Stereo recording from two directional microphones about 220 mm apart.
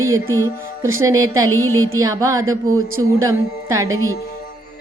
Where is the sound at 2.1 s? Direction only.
15° right (ahead or behind).